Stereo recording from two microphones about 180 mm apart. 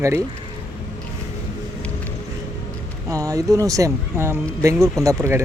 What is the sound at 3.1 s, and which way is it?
Speech, 20° right (ahead or behind).